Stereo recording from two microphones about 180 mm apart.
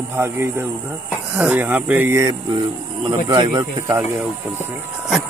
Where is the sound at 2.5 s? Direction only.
30° right (ahead or behind).